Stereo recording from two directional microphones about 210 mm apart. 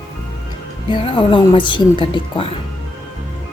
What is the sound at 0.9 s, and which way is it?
Speech, 25° left (ahead or behind).